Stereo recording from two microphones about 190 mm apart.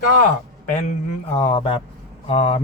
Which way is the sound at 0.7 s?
40° left (ahead or behind).